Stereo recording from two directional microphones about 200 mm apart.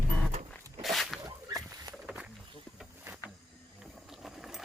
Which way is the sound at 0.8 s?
Centre (ahead or behind).